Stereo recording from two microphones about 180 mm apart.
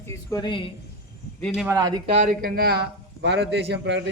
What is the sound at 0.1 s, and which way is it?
Speech, 20° left (ahead or behind).